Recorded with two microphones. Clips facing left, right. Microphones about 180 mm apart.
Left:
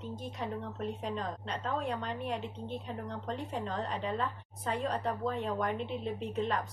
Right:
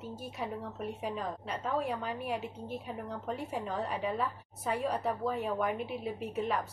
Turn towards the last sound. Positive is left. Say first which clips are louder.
# even
turn(degrees=-10)  # may be behind; listen again after turning